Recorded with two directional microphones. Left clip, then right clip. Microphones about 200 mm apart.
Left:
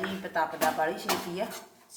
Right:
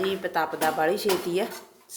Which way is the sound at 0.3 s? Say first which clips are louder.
Right 1 dB; 55° right (ahead or behind).